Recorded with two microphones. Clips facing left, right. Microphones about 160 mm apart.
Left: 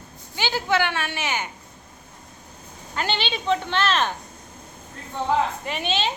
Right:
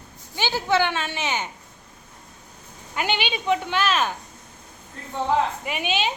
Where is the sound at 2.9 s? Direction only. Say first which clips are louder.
Right 1 dB; 15° right (ahead or behind).